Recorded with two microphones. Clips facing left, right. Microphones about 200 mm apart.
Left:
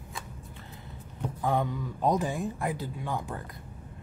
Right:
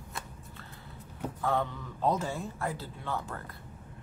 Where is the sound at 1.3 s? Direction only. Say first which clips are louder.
Left 3 dB; 15° left (ahead or behind).